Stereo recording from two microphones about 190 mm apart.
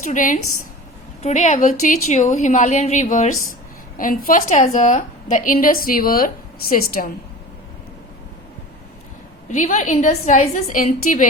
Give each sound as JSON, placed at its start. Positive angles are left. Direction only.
{"t": 0.0, "sound": "a woman's voice", "side_deg": 40}
{"t": 9.5, "sound": "a woman's voice", "side_deg": 40}